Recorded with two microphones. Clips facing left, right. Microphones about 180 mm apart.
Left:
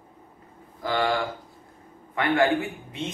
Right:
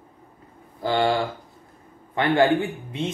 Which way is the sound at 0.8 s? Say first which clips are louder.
Right 3 dB; 30° right (ahead or behind).